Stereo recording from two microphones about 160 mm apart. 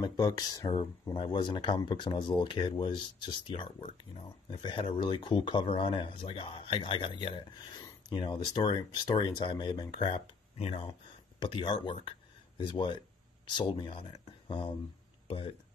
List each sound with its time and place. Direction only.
0.0 s speech: 25° left (ahead or behind)